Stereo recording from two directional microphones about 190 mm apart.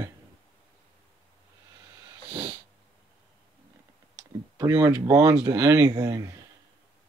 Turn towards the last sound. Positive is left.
turn(degrees=-20)  # may be behind; listen again after turning